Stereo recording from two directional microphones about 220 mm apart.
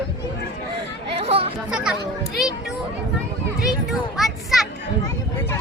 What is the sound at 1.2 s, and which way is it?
Chatter, 25° right (ahead or behind).